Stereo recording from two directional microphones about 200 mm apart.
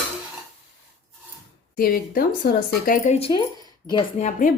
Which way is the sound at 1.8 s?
45° left (ahead or behind).